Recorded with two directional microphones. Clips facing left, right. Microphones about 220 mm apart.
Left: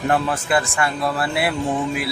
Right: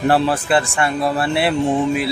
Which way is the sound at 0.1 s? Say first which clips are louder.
Right 3 dB; 30° right (ahead or behind).